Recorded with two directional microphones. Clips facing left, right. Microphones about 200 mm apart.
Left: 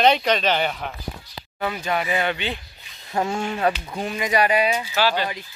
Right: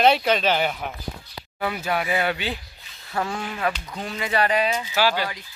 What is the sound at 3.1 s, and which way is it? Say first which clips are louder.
Speech: left 4 dB; 25° left (ahead or behind).